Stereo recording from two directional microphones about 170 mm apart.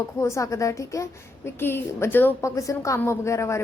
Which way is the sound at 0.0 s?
15° left (ahead or behind).